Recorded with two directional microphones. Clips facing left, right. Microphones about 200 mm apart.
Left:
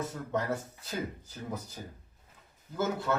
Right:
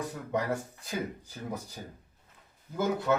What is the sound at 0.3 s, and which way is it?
Speech, 10° right (ahead or behind).